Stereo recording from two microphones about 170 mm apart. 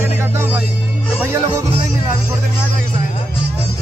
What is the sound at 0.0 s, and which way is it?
Music, 15° right (ahead or behind).